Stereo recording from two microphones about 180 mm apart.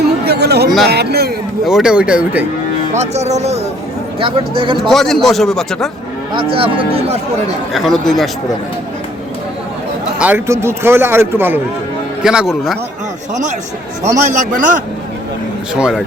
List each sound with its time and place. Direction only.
0.0 s a sound: 65° right (ahead or behind)
0.9 s speech: 65° right (ahead or behind)
1.6 s speech: 5° right (ahead or behind)
2.9 s speech: 40° right (ahead or behind)
4.8 s speech: centre (ahead or behind)
6.3 s speech: 30° right (ahead or behind)
7.7 s speech: centre (ahead or behind)
10.2 s a man's voice: 10° right (ahead or behind)
14.3 s a man's voice: 45° right (ahead or behind)
15.7 s speech: 5° right (ahead or behind)